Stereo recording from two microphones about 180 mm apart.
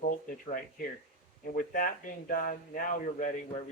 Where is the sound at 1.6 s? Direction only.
50° left (ahead or behind).